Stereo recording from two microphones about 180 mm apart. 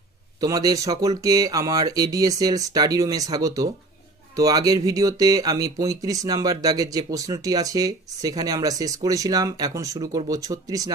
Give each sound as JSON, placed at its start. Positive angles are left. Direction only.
{"t": 0.3, "sound": "speech", "side_deg": -20}